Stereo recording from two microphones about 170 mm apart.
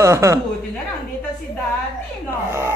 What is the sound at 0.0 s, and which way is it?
Speech, 15° right (ahead or behind).